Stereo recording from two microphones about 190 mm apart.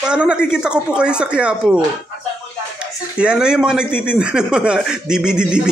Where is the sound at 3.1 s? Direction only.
5° right (ahead or behind).